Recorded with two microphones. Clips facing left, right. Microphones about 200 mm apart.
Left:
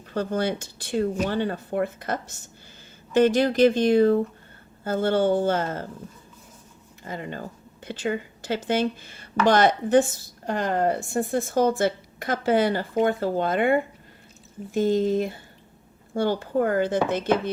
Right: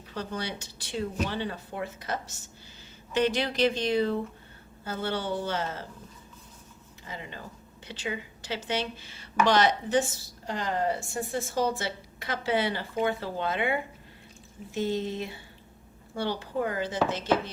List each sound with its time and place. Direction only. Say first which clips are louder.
0.1 s speech: left 9 dB; 50° left (ahead or behind)
7.0 s speech: left 8 dB; 50° left (ahead or behind)